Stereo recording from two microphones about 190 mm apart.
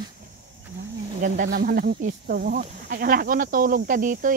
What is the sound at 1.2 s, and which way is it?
Speech, 45° right (ahead or behind).